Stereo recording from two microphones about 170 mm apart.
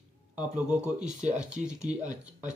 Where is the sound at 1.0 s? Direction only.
5° right (ahead or behind).